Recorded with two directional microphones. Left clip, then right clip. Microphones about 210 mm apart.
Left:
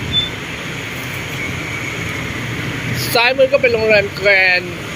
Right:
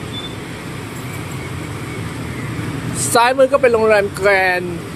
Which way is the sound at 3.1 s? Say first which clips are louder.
Even; 15° right (ahead or behind).